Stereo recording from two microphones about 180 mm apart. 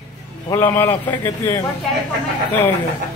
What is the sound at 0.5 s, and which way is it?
A man's voice, 15° left (ahead or behind).